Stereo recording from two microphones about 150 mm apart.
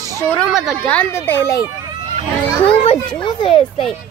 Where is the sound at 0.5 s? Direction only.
Centre (ahead or behind).